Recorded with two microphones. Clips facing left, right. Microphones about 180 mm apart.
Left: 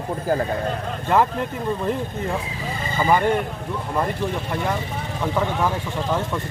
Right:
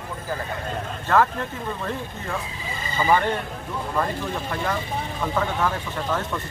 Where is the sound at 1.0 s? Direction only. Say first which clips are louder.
Left 1 dB; 15° left (ahead or behind).